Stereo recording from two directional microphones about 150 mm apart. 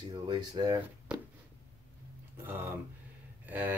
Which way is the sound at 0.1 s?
25° right (ahead or behind).